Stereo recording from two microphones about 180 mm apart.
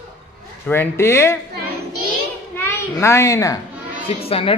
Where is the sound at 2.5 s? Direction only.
15° left (ahead or behind).